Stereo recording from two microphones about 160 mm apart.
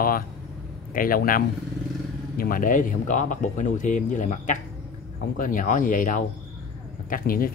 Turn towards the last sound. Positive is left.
turn(degrees=60)  # may be behind; listen again after turning